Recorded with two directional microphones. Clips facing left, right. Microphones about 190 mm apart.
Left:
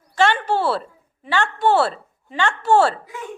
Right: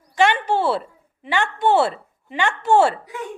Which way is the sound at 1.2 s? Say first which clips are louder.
Left 1 dB; 20° right (ahead or behind).